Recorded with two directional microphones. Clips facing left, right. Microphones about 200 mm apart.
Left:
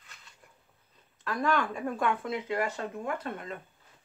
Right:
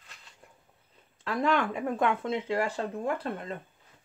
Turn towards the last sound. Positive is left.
turn(degrees=-30)  # may be behind; listen again after turning